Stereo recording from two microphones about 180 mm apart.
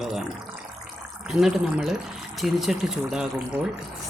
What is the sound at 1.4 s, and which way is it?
Speech, centre (ahead or behind).